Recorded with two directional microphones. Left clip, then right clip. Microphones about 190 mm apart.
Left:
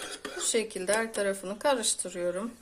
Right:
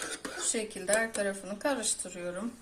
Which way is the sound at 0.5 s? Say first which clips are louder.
Left 2 dB; 60° left (ahead or behind).